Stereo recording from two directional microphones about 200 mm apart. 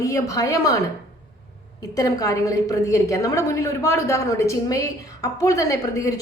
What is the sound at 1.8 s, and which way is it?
A woman's voice, 20° left (ahead or behind).